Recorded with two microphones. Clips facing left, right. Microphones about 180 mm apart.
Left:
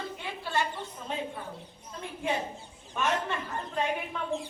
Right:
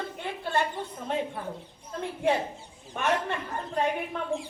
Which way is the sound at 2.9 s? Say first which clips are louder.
Right 2 dB; 60° right (ahead or behind).